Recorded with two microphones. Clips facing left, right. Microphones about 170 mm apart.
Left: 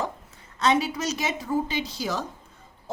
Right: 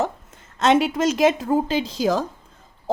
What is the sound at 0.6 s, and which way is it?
A woman's voice, 90° right.